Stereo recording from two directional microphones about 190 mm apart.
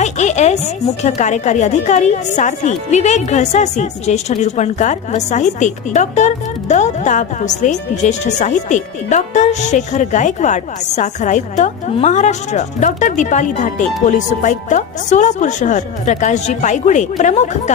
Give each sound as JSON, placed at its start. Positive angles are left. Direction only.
{"t": 0.0, "sound": "a woman's voice", "side_deg": 35}